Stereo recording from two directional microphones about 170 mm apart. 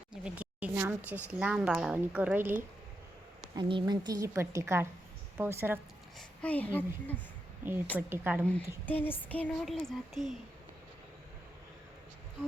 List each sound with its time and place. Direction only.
0.1 s a woman's voice: 5° right (ahead or behind)
3.5 s a woman's voice: 30° right (ahead or behind)
6.1 s a woman's voice: 10° left (ahead or behind)
7.9 s a woman's voice: 10° right (ahead or behind)
8.4 s a woman's voice: 10° left (ahead or behind)